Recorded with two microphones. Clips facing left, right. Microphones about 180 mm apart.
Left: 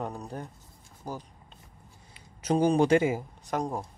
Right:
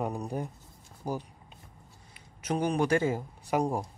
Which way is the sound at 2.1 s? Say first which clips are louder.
Left 5 dB; 30° left (ahead or behind).